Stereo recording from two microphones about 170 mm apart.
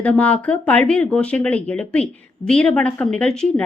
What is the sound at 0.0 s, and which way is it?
Speech, 5° left (ahead or behind).